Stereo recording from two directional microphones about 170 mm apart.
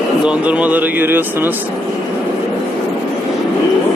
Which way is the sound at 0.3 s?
5° right (ahead or behind).